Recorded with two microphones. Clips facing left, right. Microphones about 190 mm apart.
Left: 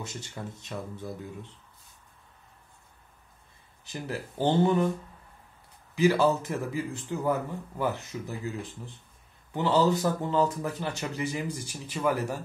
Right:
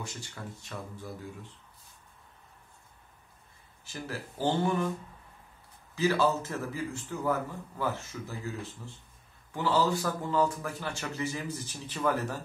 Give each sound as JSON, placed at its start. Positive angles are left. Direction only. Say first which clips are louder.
{"t": 0.0, "sound": "speech", "louder": "left 3 dB", "side_deg": 20}
{"t": 3.8, "sound": "speech", "louder": "left 4 dB", "side_deg": 20}
{"t": 5.9, "sound": "speech", "louder": "left 4 dB", "side_deg": 15}
{"t": 9.5, "sound": "speech", "louder": "left 4 dB", "side_deg": 20}